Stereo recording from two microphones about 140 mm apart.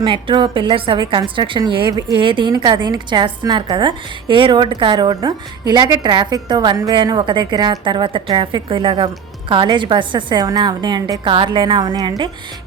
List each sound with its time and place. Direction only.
0.0 s a woman's voice: 35° right (ahead or behind)